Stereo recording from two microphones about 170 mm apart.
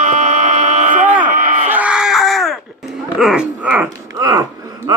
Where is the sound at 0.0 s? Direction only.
45° right (ahead or behind).